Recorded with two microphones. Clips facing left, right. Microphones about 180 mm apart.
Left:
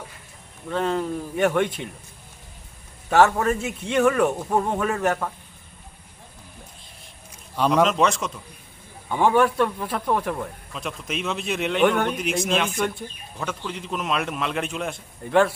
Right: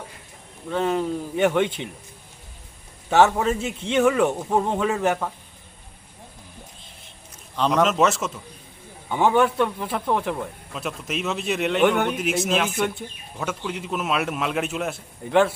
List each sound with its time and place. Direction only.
0.7 s a man's voice: 10° right (ahead or behind)
3.1 s a man's voice: 5° right (ahead or behind)
3.6 s speech: 25° right (ahead or behind)
3.9 s a man's voice: 10° right (ahead or behind)
7.5 s a man's voice: 10° left (ahead or behind)
7.9 s a man's voice: 5° right (ahead or behind)
9.3 s speech: 20° right (ahead or behind)
9.9 s a man's voice: centre (ahead or behind)